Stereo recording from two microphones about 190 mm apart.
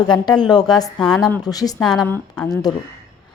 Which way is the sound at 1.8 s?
Centre (ahead or behind).